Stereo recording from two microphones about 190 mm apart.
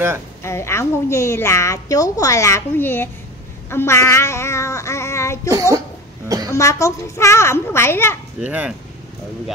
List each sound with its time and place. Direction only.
0.4 s a woman's voice: 15° left (ahead or behind)
3.7 s child singing: 15° left (ahead or behind)
6.2 s a sound: 20° right (ahead or behind)
6.5 s a woman's voice: 15° left (ahead or behind)
8.4 s speech: 5° right (ahead or behind)